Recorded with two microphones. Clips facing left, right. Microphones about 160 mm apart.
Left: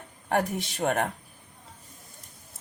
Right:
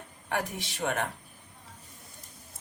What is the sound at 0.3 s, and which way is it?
Speech, 55° left (ahead or behind).